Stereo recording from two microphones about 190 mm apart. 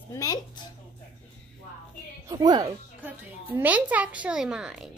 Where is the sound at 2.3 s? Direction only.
20° right (ahead or behind).